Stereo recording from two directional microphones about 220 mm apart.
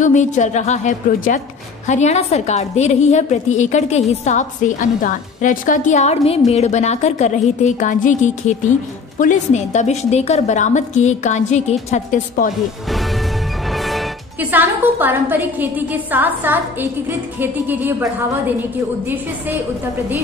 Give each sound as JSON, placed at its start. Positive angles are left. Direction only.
{"t": 0.0, "sound": "a woman's voice", "side_deg": 35}
{"t": 13.7, "sound": "a woman's voice", "side_deg": 0}